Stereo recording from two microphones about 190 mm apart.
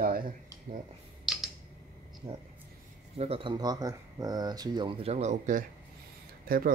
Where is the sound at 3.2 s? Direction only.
30° right (ahead or behind).